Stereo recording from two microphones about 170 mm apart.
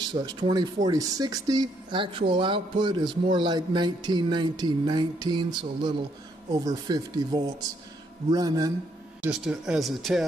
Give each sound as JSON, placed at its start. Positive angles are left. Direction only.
{"t": 0.1, "sound": "speech", "side_deg": -25}
{"t": 9.2, "sound": "speech", "side_deg": -5}